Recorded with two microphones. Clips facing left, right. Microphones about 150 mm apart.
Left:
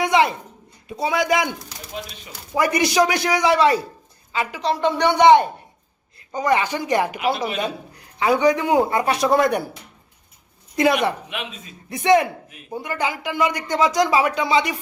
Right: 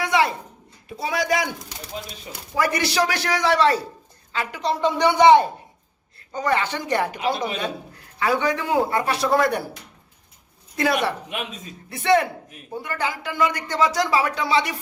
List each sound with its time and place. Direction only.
0.0 s a sound: 20° left (ahead or behind)
0.9 s speech: 20° left (ahead or behind)
2.6 s a man's voice: 20° left (ahead or behind)
6.1 s a man's voice: 15° left (ahead or behind)
10.8 s speech: 20° left (ahead or behind)
11.3 s speech: 40° right (ahead or behind)
11.9 s a man's voice: 15° left (ahead or behind)